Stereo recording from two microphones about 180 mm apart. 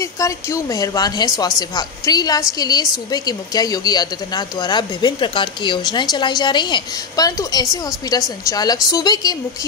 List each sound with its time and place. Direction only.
0.0 s a woman's voice: 15° left (ahead or behind)